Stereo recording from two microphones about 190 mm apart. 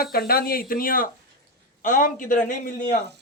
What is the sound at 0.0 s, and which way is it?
A man's voice, 50° left (ahead or behind).